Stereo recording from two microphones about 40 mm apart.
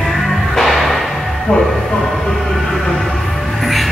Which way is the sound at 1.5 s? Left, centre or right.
Left.